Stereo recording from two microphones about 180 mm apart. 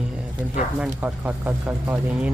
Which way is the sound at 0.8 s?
10° right (ahead or behind).